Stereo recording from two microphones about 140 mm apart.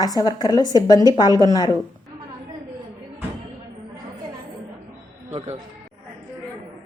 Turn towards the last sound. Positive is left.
turn(degrees=-50)  # may be behind; listen again after turning